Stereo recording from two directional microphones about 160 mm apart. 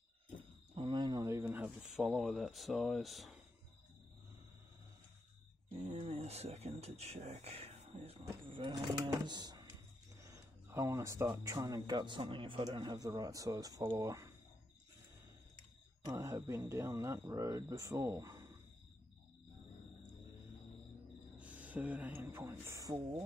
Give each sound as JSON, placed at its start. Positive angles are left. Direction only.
{"t": 0.7, "sound": "a sound", "side_deg": -30}
{"t": 5.7, "sound": "speech", "side_deg": -40}
{"t": 16.1, "sound": "speech", "side_deg": -20}
{"t": 21.4, "sound": "speech", "side_deg": -10}